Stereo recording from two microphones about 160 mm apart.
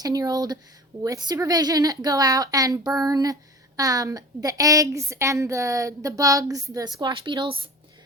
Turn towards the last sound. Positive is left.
turn(degrees=-30)  # may be behind; listen again after turning